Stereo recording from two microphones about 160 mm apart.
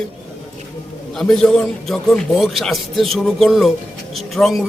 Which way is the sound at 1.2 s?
5° left (ahead or behind).